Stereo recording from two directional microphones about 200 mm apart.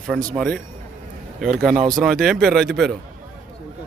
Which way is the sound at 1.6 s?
Centre (ahead or behind).